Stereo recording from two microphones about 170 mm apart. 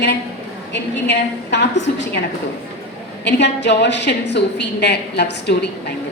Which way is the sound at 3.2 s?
90° left.